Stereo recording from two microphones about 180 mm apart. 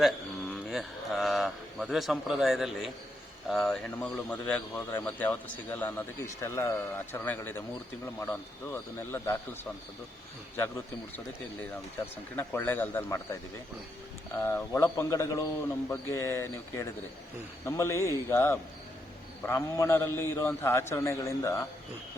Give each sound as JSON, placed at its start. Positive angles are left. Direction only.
{"t": 0.7, "sound": "a man's voice", "side_deg": 0}
{"t": 12.4, "sound": "a man's voice", "side_deg": 10}
{"t": 14.4, "sound": "a man's voice", "side_deg": 15}